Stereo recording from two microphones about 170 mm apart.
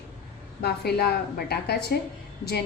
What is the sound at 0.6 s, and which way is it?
A woman's voice, 70° left (ahead or behind).